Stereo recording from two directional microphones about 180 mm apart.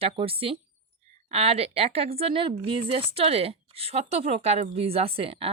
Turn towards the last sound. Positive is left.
turn(degrees=-30)  # may be behind; listen again after turning